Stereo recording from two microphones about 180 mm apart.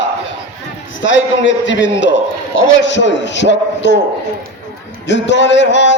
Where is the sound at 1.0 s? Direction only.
90° left.